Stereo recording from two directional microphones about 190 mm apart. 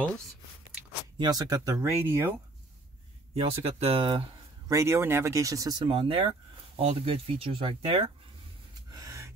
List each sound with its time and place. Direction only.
1.1 s speech: 20° right (ahead or behind)
3.3 s speech: 30° right (ahead or behind)
8.9 s gasp: 20° right (ahead or behind)